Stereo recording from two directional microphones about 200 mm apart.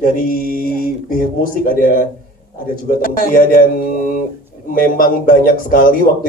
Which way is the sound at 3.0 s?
45° left (ahead or behind).